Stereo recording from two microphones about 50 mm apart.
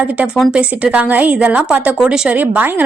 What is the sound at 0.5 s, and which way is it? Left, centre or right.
A woman's voice, right.